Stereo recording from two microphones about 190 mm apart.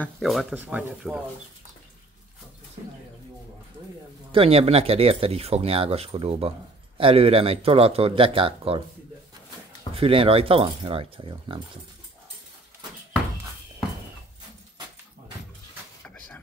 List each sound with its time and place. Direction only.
0.0 s speech: centre (ahead or behind)
4.3 s speech: 30° right (ahead or behind)
9.9 s speech: 30° right (ahead or behind)